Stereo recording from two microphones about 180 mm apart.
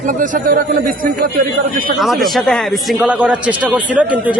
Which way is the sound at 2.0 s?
Centre (ahead or behind).